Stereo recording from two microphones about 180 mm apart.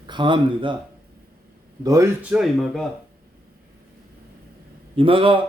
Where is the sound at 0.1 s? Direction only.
25° right (ahead or behind).